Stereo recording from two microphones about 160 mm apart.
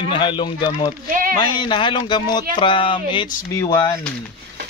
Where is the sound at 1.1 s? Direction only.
60° right (ahead or behind).